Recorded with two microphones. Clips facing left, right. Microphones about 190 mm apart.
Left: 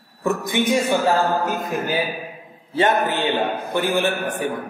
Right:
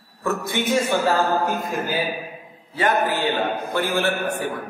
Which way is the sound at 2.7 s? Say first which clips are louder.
Left 2 dB; 25° left (ahead or behind).